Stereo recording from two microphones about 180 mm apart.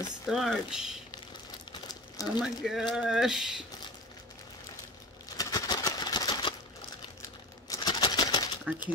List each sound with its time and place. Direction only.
0.3 s speech: centre (ahead or behind)
1.7 s crumpling: 20° left (ahead or behind)
2.4 s speech: centre (ahead or behind)
5.4 s a sound: 20° left (ahead or behind)
7.7 s a sound: 25° left (ahead or behind)
8.7 s speech: 5° right (ahead or behind)